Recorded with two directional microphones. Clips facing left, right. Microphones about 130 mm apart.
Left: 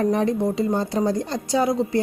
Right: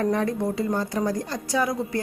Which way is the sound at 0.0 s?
20° left (ahead or behind).